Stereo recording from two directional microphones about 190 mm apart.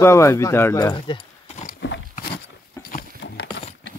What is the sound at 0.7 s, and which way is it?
Speech, 25° left (ahead or behind).